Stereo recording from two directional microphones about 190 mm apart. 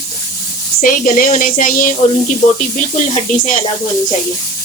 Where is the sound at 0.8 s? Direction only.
45° left (ahead or behind).